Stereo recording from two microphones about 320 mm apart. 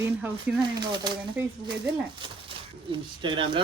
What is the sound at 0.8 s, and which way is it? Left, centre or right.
Speech, centre.